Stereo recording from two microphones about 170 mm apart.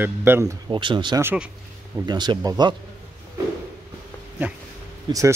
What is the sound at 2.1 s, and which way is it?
Speech, 25° right (ahead or behind).